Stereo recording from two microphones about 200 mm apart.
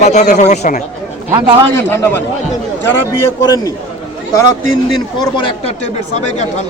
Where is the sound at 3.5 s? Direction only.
20° left (ahead or behind).